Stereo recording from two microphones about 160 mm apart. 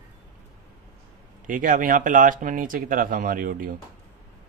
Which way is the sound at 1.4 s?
55° right (ahead or behind).